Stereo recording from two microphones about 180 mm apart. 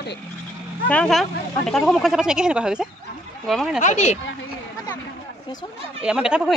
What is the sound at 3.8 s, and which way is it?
Speech, 40° left (ahead or behind).